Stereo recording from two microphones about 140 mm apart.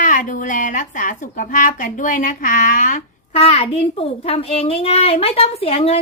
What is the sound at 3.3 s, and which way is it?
A child's voice, 45° left (ahead or behind).